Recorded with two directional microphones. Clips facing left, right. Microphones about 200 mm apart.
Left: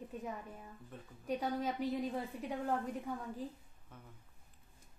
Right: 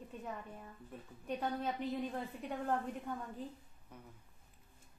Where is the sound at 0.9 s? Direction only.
10° right (ahead or behind).